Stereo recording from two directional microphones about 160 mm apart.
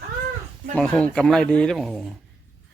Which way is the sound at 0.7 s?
5° left (ahead or behind).